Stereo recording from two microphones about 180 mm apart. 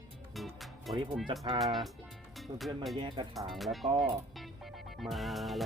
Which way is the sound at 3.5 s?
Centre (ahead or behind).